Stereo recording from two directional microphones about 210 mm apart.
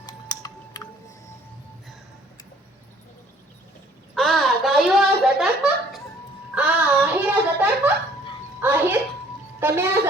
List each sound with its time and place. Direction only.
0.0 s typing: 20° left (ahead or behind)
4.1 s a sound: centre (ahead or behind)
8.6 s music: 10° right (ahead or behind)
9.6 s vehicle: 10° right (ahead or behind)